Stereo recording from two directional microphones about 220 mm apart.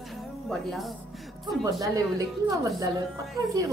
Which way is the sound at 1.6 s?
15° right (ahead or behind).